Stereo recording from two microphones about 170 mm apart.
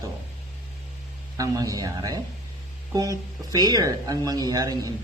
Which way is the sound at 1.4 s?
20° right (ahead or behind).